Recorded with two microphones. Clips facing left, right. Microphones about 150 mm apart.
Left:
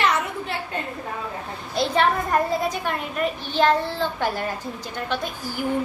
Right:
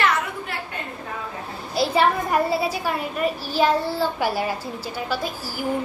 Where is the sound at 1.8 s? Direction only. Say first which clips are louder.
Right 1 dB; 5° right (ahead or behind).